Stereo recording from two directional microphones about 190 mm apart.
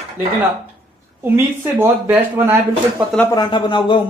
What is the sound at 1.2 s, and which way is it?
Speech, 10° right (ahead or behind).